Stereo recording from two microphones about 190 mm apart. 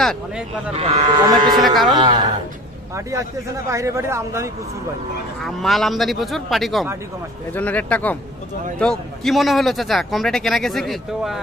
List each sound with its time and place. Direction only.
0.7 s speech: 25° right (ahead or behind)
5.4 s speech: centre (ahead or behind)